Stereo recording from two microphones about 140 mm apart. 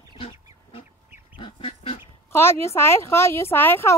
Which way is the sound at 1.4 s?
40° left (ahead or behind).